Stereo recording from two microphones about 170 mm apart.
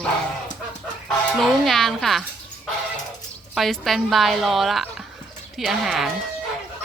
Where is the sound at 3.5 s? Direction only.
Centre (ahead or behind).